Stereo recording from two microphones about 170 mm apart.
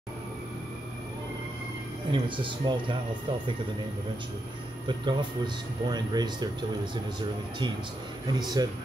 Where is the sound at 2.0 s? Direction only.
30° right (ahead or behind).